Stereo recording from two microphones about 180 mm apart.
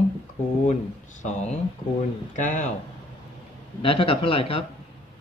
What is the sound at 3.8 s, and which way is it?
Speech, 30° left (ahead or behind).